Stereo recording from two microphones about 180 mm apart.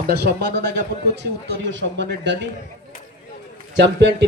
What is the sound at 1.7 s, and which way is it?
Speech, 85° right.